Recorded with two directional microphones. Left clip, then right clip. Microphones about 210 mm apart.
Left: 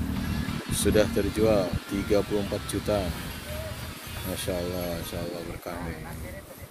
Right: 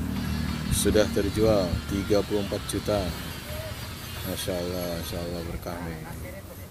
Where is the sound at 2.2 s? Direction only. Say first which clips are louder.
Right 1 dB; 25° left (ahead or behind).